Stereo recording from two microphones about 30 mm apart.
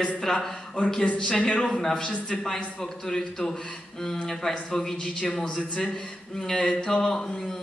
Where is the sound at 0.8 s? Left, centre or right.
Left.